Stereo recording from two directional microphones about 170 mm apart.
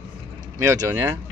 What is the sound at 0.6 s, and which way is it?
Speech, 15° right (ahead or behind).